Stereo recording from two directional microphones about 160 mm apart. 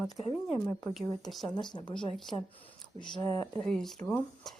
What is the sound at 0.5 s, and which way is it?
Speech, 20° left (ahead or behind).